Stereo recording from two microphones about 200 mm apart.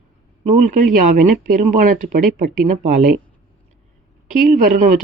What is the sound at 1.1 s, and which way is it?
Speech, 40° right (ahead or behind).